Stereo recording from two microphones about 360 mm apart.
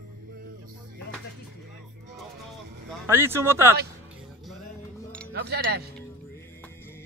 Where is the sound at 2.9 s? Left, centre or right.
Centre.